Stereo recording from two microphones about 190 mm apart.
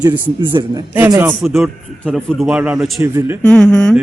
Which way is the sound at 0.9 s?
10° right (ahead or behind).